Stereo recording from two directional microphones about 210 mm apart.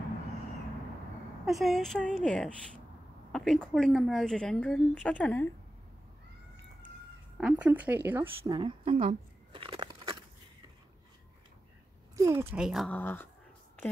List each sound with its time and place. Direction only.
1.4 s a woman's voice: centre (ahead or behind)
7.3 s a woman's voice: 5° right (ahead or behind); by 10.1 s 20° right (ahead or behind)
12.2 s a woman's voice: 15° right (ahead or behind); by 13.3 s 10° left (ahead or behind)